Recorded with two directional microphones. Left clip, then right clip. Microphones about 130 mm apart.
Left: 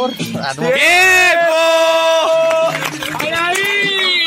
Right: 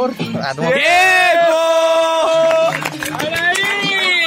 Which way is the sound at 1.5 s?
20° right (ahead or behind).